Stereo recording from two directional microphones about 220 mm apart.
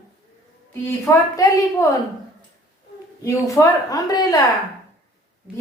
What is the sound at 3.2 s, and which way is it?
A woman's voice, 15° left (ahead or behind).